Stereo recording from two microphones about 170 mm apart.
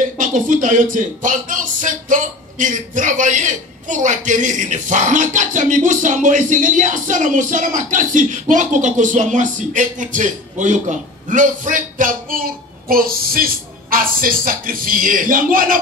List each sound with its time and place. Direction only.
0.2 s speech: 50° right (ahead or behind)